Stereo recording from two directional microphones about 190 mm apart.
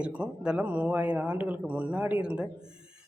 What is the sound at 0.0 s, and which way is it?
Speech, 5° right (ahead or behind).